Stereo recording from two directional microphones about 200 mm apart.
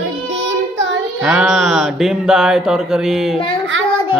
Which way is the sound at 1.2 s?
5° right (ahead or behind).